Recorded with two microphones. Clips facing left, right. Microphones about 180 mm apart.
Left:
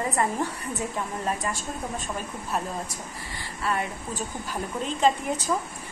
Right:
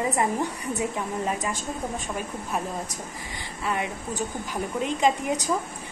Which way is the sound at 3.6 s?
15° right (ahead or behind).